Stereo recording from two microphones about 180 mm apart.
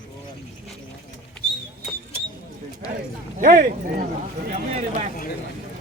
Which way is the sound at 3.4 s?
50° right (ahead or behind).